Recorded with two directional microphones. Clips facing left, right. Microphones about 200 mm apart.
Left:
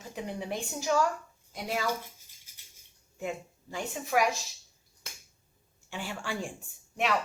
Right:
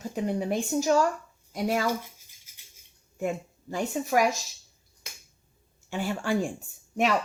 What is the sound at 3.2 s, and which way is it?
Speech, 45° right (ahead or behind).